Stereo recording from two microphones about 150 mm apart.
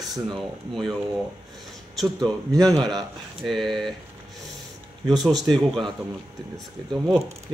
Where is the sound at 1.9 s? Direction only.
5° left (ahead or behind).